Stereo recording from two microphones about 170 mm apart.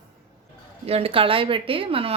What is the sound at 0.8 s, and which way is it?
A woman's voice, 35° right (ahead or behind).